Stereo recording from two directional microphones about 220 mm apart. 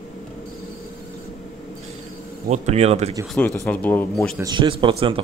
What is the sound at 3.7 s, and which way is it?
Speech, 10° left (ahead or behind).